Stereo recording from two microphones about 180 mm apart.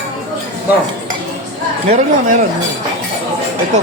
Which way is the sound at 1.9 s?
45° right (ahead or behind).